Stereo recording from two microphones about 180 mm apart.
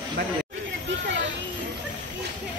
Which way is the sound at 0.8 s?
90° right.